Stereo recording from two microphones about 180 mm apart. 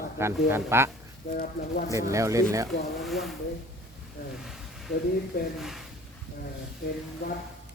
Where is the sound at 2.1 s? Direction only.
15° right (ahead or behind).